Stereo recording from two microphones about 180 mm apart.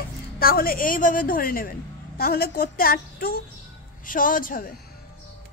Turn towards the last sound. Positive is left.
turn(degrees=50)  # may be behind; listen again after turning